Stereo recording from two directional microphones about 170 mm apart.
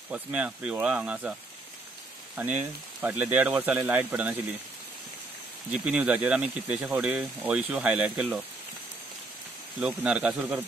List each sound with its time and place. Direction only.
0.1 s speech: 5° right (ahead or behind)
2.3 s speech: 10° right (ahead or behind)
5.7 s speech: 5° right (ahead or behind)
9.8 s speech: 5° right (ahead or behind)